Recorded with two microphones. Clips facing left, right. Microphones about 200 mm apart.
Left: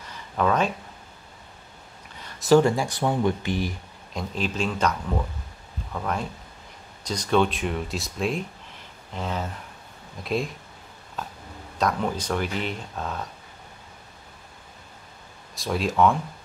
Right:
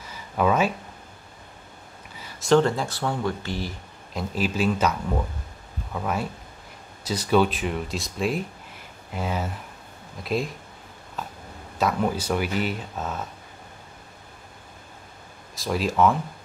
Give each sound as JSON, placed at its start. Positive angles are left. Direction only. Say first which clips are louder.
{"t": 0.1, "sound": "a sound", "louder": "right 1 dB", "side_deg": -5}
{"t": 2.1, "sound": "a sound", "louder": "even", "side_deg": -5}
{"t": 2.5, "sound": "speech", "louder": "left 2 dB", "side_deg": 10}
{"t": 4.1, "sound": "speech", "louder": "right 2 dB", "side_deg": -5}
{"t": 5.9, "sound": "speech", "louder": "right 1 dB", "side_deg": -5}
{"t": 11.8, "sound": "speech", "louder": "right 1 dB", "side_deg": -5}
{"t": 15.5, "sound": "speech", "louder": "even", "side_deg": 0}